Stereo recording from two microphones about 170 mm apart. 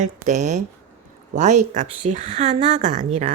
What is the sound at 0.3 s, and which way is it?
Speech, 45° right (ahead or behind).